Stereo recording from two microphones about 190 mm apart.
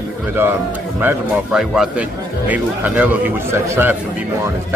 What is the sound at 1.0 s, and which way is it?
Speech, 5° right (ahead or behind).